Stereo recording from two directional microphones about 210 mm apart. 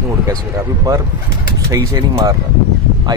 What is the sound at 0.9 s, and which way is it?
Speech, 15° right (ahead or behind).